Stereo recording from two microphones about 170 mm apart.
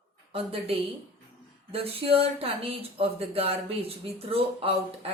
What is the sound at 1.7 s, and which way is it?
A woman's voice, 35° right (ahead or behind).